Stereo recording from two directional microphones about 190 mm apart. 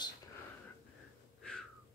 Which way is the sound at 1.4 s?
5° left (ahead or behind).